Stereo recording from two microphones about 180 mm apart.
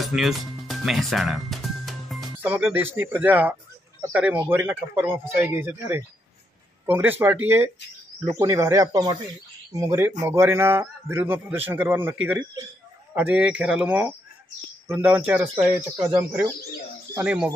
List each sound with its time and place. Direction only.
0.0 s music: centre (ahead or behind)
2.4 s a man's voice: 10° right (ahead or behind)